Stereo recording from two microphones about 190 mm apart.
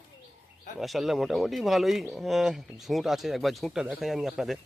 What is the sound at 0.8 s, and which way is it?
Speech, centre (ahead or behind).